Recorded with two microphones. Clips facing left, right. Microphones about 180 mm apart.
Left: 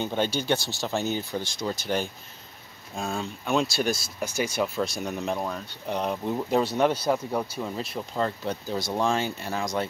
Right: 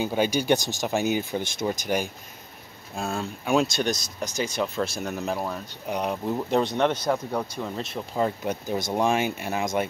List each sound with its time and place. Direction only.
0.0 s speech: 10° right (ahead or behind)
3.0 s speech: 5° right (ahead or behind)
4.4 s speech: 10° left (ahead or behind)
8.2 s speech: 20° right (ahead or behind)